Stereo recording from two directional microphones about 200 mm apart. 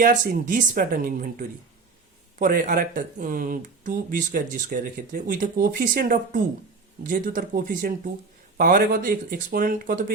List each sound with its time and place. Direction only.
0.0 s speech: 45° right (ahead or behind)